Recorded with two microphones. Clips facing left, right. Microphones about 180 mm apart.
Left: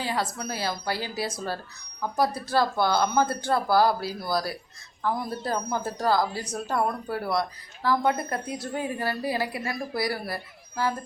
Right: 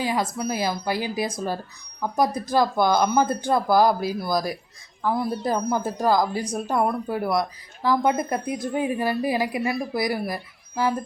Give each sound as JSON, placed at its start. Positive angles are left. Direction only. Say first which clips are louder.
{"t": 0.0, "sound": "speech", "louder": "right 4 dB", "side_deg": -10}